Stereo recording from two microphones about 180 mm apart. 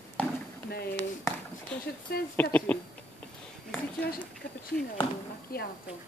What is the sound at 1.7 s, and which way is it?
Speech, 5° left (ahead or behind).